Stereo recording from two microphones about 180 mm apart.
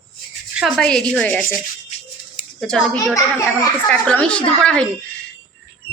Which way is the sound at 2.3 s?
5° left (ahead or behind).